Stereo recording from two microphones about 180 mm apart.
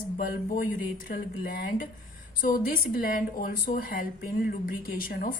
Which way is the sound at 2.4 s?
50° left (ahead or behind).